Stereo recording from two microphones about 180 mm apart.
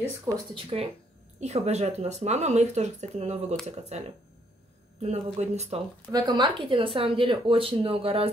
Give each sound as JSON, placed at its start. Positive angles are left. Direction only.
{"t": 0.6, "sound": "speech", "side_deg": -30}
{"t": 5.0, "sound": "speech", "side_deg": -40}
{"t": 6.1, "sound": "speech", "side_deg": -25}